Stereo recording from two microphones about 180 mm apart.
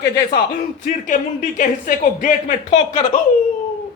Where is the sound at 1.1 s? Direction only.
45° left (ahead or behind).